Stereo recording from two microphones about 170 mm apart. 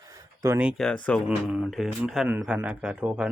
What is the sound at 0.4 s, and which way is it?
Speech, 15° right (ahead or behind).